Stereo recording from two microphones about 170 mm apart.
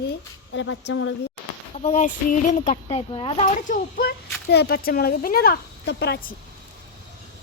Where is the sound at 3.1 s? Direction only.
35° left (ahead or behind).